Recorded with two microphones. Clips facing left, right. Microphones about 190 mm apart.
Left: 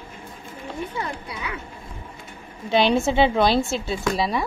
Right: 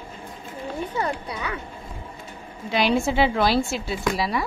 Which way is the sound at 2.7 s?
25° left (ahead or behind).